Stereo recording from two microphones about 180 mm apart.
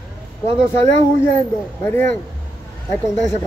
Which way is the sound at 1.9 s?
10° left (ahead or behind).